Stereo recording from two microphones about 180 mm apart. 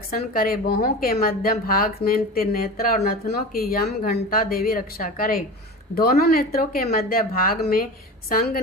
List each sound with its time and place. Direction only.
0.1 s speech: 55° left (ahead or behind)